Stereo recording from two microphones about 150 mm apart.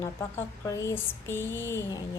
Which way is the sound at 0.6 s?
20° left (ahead or behind).